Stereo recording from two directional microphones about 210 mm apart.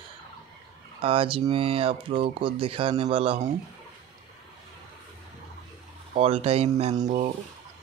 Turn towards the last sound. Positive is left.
turn(degrees=-35)  # may be behind; listen again after turning